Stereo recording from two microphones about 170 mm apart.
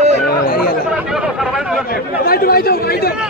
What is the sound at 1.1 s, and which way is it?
Speech, centre (ahead or behind).